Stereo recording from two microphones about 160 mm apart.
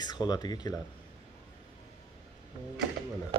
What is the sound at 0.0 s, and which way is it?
Speech, 25° left (ahead or behind).